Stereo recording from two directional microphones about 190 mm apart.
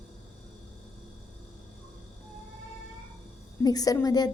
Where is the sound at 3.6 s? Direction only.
20° left (ahead or behind).